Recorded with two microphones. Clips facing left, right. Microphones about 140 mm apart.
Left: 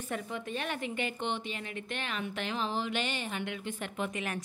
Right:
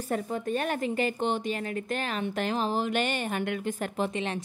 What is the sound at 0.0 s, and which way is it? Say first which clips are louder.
A woman's voice: right 7 dB; 40° right (ahead or behind).